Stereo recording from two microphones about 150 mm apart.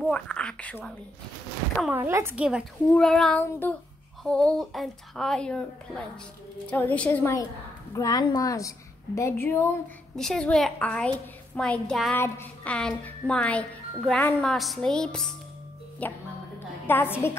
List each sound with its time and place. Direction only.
0.0 s a woman's voice: 5° left (ahead or behind)
1.9 s speech: 15° right (ahead or behind)
2.9 s speech: 5° left (ahead or behind)
3.3 s a woman's voice: 15° left (ahead or behind)
7.9 s a woman's voice: 25° left (ahead or behind)
10.1 s a woman's voice: 5° left (ahead or behind)